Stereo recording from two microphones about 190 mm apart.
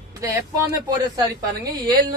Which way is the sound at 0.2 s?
15° right (ahead or behind).